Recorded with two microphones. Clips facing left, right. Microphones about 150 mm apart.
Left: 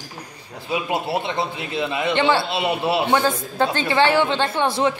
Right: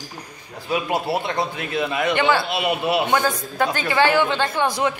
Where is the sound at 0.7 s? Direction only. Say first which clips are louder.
Right 1 dB; 25° left (ahead or behind).